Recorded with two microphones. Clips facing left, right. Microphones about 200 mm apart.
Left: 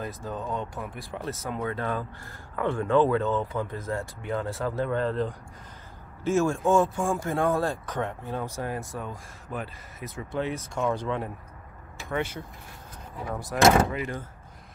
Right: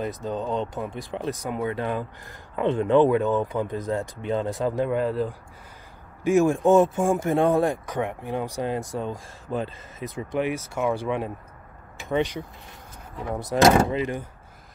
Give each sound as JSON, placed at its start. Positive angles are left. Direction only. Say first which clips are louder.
{"t": 0.0, "sound": "speech", "louder": "right 5 dB", "side_deg": -20}